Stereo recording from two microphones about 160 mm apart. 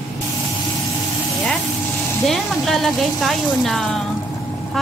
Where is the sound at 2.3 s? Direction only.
Centre (ahead or behind).